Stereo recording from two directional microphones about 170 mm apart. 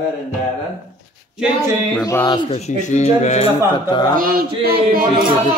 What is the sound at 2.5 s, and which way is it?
Speech, 40° left (ahead or behind).